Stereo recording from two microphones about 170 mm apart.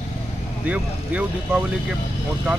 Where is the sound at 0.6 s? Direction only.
10° right (ahead or behind).